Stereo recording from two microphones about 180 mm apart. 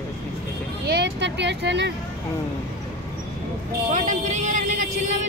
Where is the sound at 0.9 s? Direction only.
70° right (ahead or behind).